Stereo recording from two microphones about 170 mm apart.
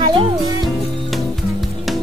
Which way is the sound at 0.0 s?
25° right (ahead or behind).